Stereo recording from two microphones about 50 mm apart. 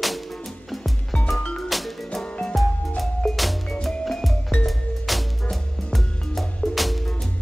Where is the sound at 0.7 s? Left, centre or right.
Centre.